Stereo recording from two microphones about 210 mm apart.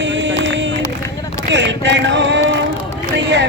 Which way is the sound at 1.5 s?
60° right (ahead or behind).